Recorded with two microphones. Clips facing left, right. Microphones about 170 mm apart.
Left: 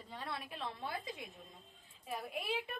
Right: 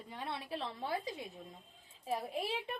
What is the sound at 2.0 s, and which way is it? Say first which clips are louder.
Speech: right 5 dB; 30° right (ahead or behind).